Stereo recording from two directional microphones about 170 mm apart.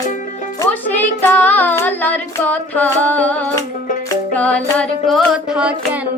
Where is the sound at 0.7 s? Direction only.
10° left (ahead or behind).